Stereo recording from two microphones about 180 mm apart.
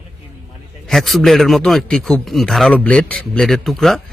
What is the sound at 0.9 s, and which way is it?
A man's voice, centre (ahead or behind).